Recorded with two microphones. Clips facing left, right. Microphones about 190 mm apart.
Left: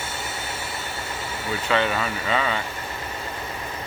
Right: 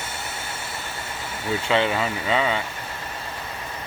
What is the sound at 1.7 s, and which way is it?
Speech, 20° right (ahead or behind).